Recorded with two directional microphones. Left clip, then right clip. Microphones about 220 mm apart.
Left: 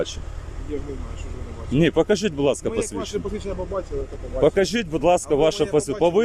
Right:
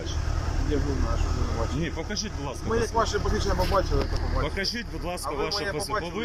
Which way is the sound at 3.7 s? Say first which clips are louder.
Right 4 dB; 15° left (ahead or behind).